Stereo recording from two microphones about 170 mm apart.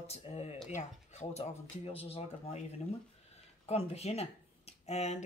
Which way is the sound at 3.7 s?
40° left (ahead or behind).